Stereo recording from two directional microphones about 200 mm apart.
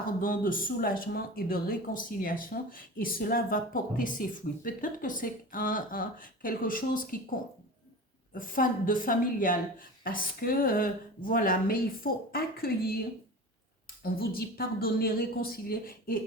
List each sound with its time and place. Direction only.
0.2 s speech: 45° left (ahead or behind)
14.0 s speech: 50° left (ahead or behind)